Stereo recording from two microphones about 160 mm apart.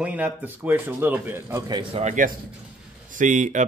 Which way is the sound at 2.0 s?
55° right (ahead or behind).